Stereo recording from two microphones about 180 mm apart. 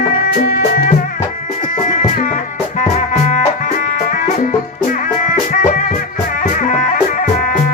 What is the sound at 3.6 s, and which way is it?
Music, 50° left (ahead or behind).